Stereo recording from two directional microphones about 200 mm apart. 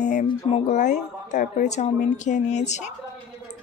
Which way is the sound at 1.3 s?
35° left (ahead or behind).